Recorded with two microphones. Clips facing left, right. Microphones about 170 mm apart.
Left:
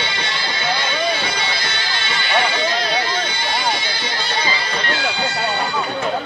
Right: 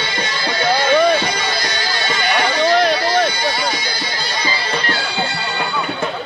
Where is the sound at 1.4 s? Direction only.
40° right (ahead or behind).